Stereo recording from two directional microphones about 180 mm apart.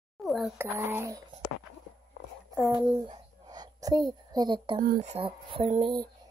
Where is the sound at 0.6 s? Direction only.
10° right (ahead or behind).